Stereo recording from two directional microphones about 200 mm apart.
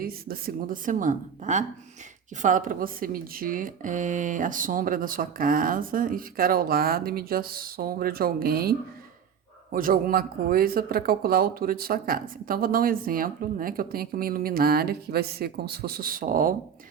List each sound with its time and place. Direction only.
0.0 s speech: 45° right (ahead or behind)
9.7 s speech: 45° right (ahead or behind)